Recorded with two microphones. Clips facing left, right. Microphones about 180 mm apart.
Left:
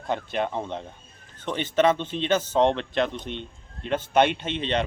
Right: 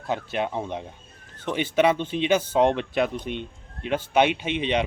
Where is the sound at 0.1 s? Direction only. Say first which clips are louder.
Even; 5° right (ahead or behind).